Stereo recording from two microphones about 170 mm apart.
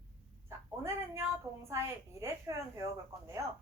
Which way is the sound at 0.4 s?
15° right (ahead or behind).